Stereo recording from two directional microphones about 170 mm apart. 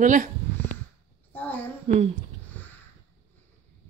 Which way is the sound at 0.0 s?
50° right (ahead or behind).